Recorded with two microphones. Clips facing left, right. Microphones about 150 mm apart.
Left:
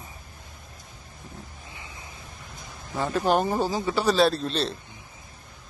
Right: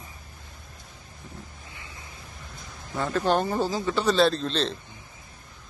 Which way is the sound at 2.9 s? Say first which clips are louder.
Left 1 dB; 10° left (ahead or behind).